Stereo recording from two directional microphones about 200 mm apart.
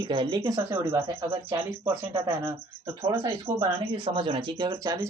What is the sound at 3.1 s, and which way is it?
Speech, 20° right (ahead or behind).